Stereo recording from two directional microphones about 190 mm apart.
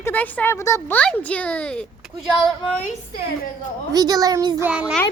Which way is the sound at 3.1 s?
55° left (ahead or behind).